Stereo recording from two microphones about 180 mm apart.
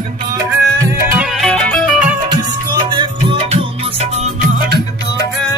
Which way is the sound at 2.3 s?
25° right (ahead or behind).